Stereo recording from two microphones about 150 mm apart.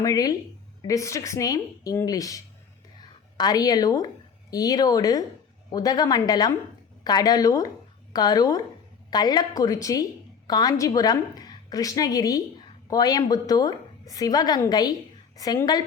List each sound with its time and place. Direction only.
0.0 s a woman's voice: 25° left (ahead or behind)